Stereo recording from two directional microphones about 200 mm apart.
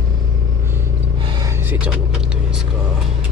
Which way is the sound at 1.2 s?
20° right (ahead or behind).